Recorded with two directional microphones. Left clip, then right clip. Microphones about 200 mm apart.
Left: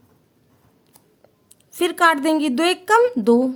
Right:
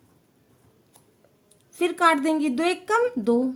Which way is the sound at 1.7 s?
30° left (ahead or behind).